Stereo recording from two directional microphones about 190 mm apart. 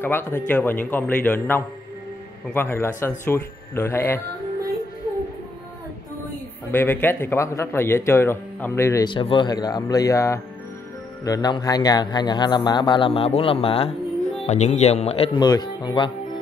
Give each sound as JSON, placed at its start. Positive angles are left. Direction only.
{"t": 0.0, "sound": "speech", "side_deg": 10}
{"t": 6.7, "sound": "speech", "side_deg": 10}